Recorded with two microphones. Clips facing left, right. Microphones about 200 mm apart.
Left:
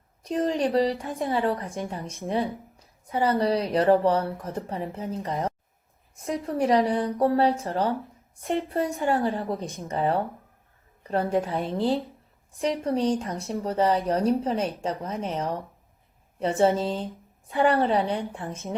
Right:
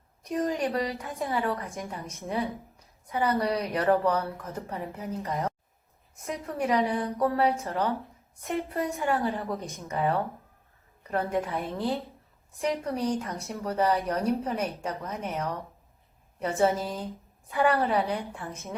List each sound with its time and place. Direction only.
0.3 s a woman's voice: 30° left (ahead or behind)